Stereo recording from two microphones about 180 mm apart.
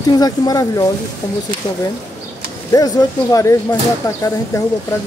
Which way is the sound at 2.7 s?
20° left (ahead or behind).